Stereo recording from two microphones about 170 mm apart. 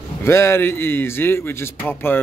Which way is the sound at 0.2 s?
15° left (ahead or behind).